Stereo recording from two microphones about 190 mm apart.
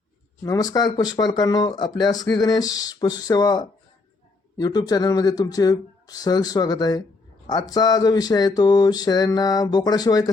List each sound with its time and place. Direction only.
0.4 s speech: 20° left (ahead or behind)